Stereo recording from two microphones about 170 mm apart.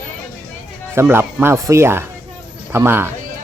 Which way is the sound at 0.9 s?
15° right (ahead or behind).